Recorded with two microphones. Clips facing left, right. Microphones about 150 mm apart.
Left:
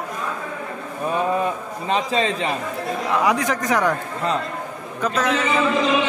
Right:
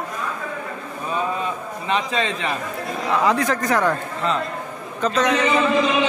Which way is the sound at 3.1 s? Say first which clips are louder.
Right 1 dB; 15° left (ahead or behind).